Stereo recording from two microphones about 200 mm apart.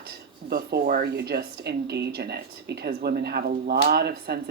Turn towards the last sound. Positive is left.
turn(degrees=-55)  # may be behind; listen again after turning